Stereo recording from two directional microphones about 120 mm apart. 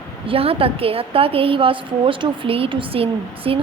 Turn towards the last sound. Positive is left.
turn(degrees=-50)  # may be behind; listen again after turning